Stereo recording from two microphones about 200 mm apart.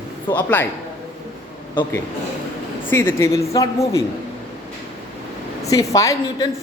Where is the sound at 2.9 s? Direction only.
10° left (ahead or behind).